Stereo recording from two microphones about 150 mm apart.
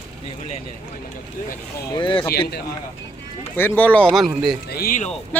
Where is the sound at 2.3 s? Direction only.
90° left.